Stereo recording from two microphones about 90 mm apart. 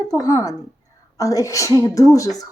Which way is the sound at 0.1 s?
40° left (ahead or behind).